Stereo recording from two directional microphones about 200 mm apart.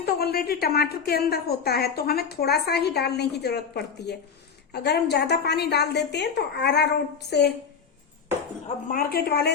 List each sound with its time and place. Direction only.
0.0 s a woman's voice: 50° left (ahead or behind)
8.6 s a woman's voice: 45° left (ahead or behind)